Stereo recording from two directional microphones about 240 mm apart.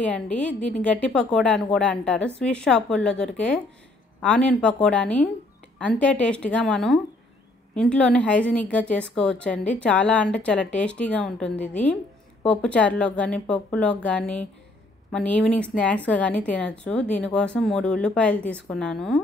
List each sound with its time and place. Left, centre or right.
0.0 s a woman's voice: centre
0.6 s a woman's voice: left
0.8 s a woman's voice: centre